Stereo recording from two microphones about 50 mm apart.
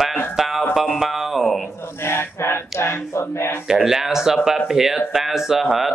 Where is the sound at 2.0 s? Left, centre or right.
Left.